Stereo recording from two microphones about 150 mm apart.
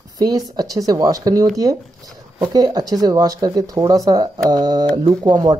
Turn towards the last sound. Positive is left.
turn(degrees=-25)  # may be behind; listen again after turning